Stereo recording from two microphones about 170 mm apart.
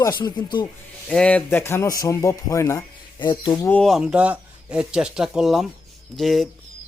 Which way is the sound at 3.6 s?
5° left (ahead or behind).